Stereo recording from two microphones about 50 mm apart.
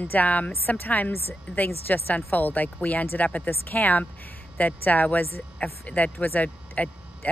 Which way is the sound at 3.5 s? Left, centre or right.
Left.